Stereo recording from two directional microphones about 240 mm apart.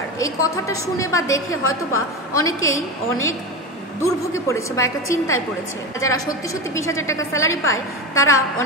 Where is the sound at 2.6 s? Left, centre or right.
Left.